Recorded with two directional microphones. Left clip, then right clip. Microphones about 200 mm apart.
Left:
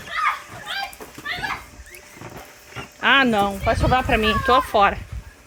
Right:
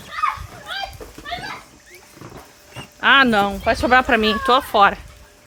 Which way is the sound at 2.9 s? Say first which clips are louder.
Right 3 dB; centre (ahead or behind).